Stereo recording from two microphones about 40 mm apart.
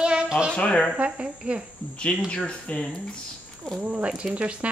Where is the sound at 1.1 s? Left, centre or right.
Right.